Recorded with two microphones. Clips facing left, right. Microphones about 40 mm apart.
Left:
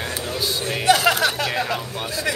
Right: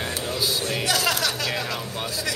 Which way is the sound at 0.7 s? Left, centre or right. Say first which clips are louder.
Left 9 dB; left.